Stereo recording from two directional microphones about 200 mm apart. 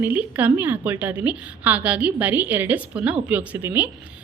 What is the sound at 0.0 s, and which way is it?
A woman's voice, 10° right (ahead or behind).